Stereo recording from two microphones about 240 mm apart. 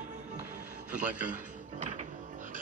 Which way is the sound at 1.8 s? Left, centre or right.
Right.